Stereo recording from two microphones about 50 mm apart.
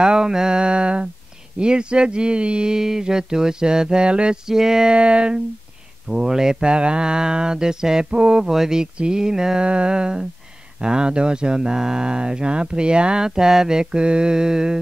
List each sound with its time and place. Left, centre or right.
0.0 s speech: centre
4.9 s music: right
6.0 s speech: centre